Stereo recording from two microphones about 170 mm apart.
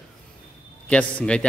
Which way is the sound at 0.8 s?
5° left (ahead or behind).